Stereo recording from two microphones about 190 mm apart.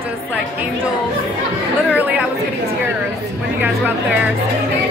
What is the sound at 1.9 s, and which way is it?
Speech, 10° right (ahead or behind).